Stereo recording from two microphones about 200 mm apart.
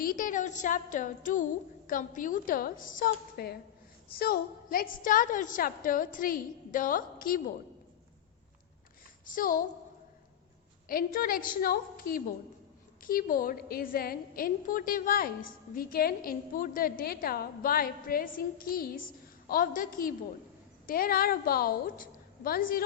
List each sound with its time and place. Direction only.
0.0 s a sound: 45° left (ahead or behind)
1.9 s a woman's voice: 40° left (ahead or behind)
9.2 s a woman's voice: 45° left (ahead or behind)
10.8 s a woman's voice: 45° left (ahead or behind)